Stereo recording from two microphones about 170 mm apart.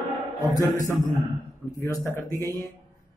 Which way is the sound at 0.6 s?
20° left (ahead or behind).